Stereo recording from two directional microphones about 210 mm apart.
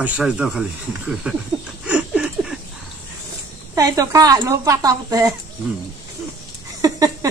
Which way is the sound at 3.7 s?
15° right (ahead or behind).